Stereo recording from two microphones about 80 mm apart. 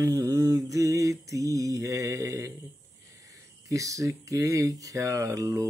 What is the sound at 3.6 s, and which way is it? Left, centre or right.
Mantra, right.